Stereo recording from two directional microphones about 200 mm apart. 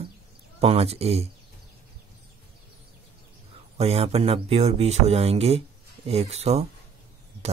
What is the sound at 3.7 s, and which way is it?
A man's voice, 30° right (ahead or behind).